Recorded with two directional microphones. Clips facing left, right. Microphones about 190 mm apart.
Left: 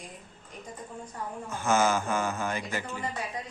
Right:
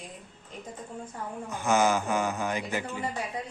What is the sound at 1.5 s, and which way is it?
A man's voice, 15° right (ahead or behind).